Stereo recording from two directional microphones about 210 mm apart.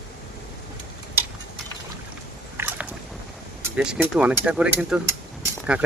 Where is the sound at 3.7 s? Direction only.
5° right (ahead or behind).